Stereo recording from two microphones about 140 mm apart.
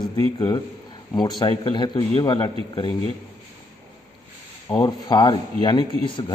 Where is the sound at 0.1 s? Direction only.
30° left (ahead or behind).